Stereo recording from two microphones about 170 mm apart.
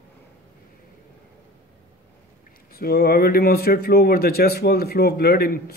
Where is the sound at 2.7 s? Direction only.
65° left (ahead or behind).